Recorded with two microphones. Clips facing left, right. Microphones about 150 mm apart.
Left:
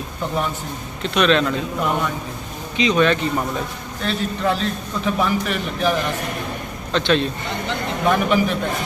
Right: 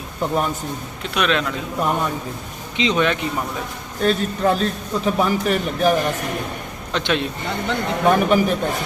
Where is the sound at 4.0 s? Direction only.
45° right (ahead or behind).